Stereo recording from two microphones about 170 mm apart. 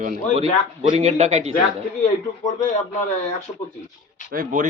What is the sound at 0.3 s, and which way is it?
Speech, 35° right (ahead or behind).